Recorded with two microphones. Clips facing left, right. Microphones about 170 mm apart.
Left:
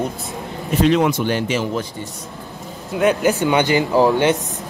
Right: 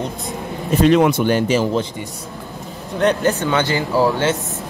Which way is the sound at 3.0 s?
10° left (ahead or behind).